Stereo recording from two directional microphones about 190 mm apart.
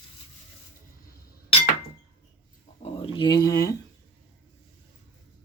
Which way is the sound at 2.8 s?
25° left (ahead or behind).